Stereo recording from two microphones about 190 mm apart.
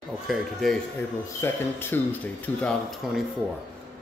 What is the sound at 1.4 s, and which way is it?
A man's voice, 10° left (ahead or behind).